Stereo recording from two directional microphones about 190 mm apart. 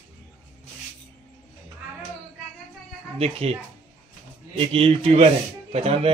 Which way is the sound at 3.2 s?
30° right (ahead or behind).